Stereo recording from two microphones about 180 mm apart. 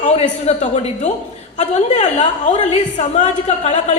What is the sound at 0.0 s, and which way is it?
A woman's voice, 40° left (ahead or behind).